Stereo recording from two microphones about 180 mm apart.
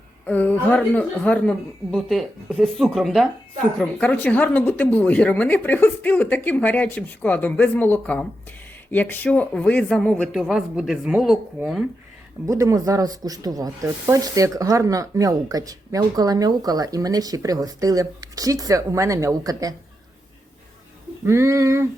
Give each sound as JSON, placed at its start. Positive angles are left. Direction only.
{"t": 0.3, "sound": "a woman's voice", "side_deg": 10}
{"t": 12.5, "sound": "speech", "side_deg": -15}
{"t": 21.2, "sound": "a sound", "side_deg": -15}